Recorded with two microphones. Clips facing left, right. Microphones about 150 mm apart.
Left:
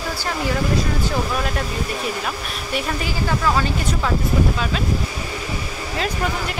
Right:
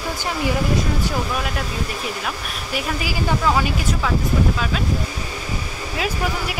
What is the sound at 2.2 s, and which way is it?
Speech, 5° right (ahead or behind).